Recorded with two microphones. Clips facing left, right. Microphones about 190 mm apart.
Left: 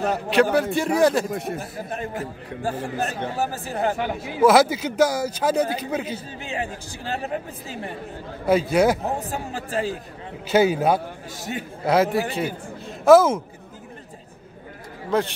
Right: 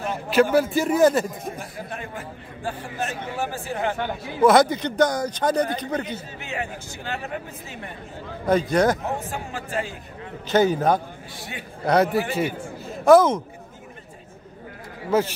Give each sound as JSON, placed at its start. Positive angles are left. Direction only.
{"t": 0.3, "sound": "speech", "side_deg": 0}
{"t": 1.3, "sound": "a man's voice", "side_deg": 75}
{"t": 2.0, "sound": "a man's voice", "side_deg": 40}
{"t": 4.0, "sound": "speech", "side_deg": 5}
{"t": 6.1, "sound": "a man's voice", "side_deg": 35}
{"t": 8.5, "sound": "a man's voice", "side_deg": 5}
{"t": 9.0, "sound": "a man's voice", "side_deg": 40}
{"t": 10.5, "sound": "a man's voice", "side_deg": 10}
{"t": 11.3, "sound": "a man's voice", "side_deg": 45}
{"t": 11.8, "sound": "a man's voice", "side_deg": 5}
{"t": 15.0, "sound": "speech", "side_deg": -5}